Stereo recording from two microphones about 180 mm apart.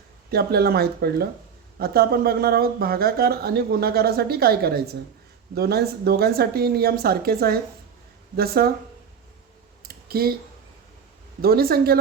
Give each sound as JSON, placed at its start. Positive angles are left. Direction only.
{"t": 0.3, "sound": "speech", "side_deg": -60}
{"t": 9.8, "sound": "a sound", "side_deg": -55}
{"t": 11.4, "sound": "speech", "side_deg": -60}